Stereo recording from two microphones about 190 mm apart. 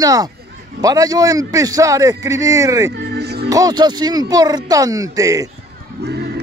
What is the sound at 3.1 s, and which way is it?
Music, 60° right (ahead or behind).